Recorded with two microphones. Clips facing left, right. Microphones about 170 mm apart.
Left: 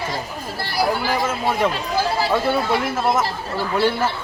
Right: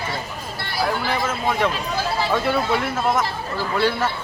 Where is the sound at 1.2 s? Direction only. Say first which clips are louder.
Left 1 dB; 10° left (ahead or behind).